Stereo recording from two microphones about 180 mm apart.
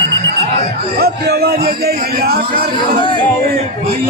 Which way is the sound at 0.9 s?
60° right (ahead or behind).